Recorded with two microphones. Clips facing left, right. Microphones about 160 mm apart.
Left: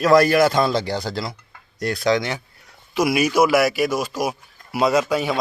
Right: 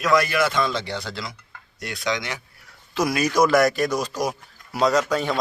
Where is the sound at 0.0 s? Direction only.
35° left (ahead or behind).